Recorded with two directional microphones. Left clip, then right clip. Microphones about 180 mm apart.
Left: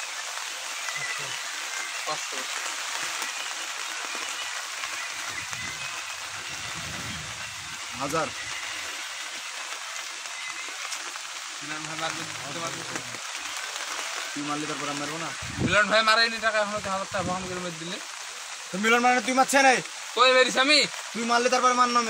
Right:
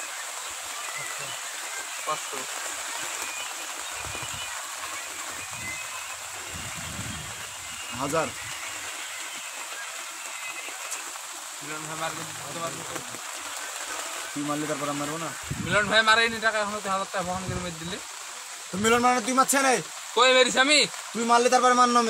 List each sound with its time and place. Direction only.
8.0 s speech: 45° right (ahead or behind)
15.7 s speech: 15° right (ahead or behind)
18.9 s a man's voice: 65° right (ahead or behind)
20.2 s speech: 10° right (ahead or behind)
21.3 s a man's voice: 65° right (ahead or behind)